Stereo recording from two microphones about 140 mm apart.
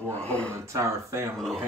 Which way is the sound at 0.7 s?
20° right (ahead or behind).